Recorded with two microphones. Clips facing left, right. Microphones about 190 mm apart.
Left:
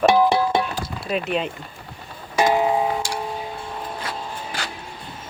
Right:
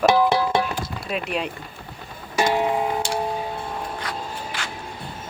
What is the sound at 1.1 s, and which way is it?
Speech, centre (ahead or behind).